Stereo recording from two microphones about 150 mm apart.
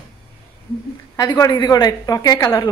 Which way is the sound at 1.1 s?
25° left (ahead or behind).